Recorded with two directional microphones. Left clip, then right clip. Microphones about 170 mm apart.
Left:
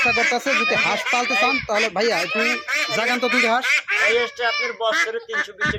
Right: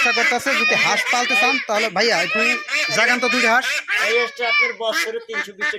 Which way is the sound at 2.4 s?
15° right (ahead or behind).